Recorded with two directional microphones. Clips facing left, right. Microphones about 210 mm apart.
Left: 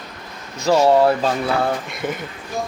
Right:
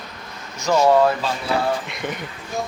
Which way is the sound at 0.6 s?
35° left (ahead or behind).